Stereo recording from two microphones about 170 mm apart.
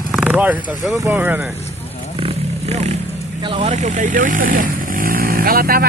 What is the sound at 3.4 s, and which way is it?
Speech, 35° right (ahead or behind).